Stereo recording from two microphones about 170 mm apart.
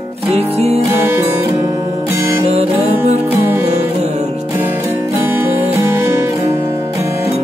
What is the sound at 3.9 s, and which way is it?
Music, 40° right (ahead or behind).